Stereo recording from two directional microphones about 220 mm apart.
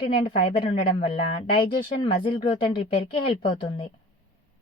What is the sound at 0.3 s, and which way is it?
A woman's voice, 25° left (ahead or behind).